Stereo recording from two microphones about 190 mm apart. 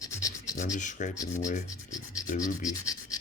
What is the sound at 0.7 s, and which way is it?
Speech, 40° left (ahead or behind).